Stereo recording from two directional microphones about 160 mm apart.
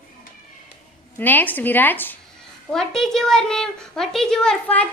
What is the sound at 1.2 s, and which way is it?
A woman's voice, 10° left (ahead or behind).